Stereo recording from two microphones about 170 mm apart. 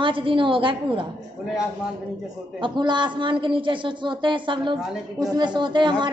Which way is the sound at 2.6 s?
25° right (ahead or behind).